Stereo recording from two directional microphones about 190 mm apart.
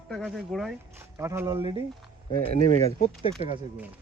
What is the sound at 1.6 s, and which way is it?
Speech, 30° right (ahead or behind).